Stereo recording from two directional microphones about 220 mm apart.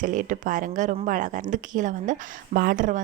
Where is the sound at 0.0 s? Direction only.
35° right (ahead or behind).